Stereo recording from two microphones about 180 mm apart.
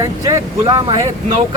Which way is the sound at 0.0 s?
20° right (ahead or behind).